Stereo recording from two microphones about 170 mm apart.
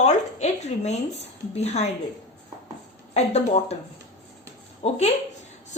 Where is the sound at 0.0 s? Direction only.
40° left (ahead or behind).